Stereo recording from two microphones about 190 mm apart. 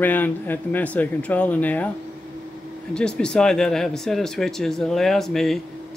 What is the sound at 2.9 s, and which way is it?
Speech, 5° left (ahead or behind).